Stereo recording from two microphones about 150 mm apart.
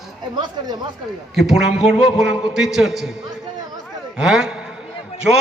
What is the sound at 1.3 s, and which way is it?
A man's voice, centre (ahead or behind).